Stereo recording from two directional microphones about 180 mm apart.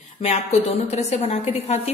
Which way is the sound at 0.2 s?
35° left (ahead or behind).